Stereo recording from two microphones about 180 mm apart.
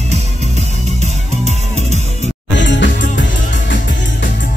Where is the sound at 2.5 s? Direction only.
90° left.